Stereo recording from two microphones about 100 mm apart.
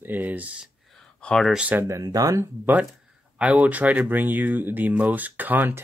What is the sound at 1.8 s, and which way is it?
Speech, 30° right (ahead or behind).